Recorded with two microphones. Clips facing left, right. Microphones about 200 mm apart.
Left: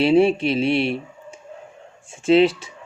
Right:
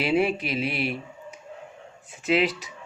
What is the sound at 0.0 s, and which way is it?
Speech, 30° left (ahead or behind).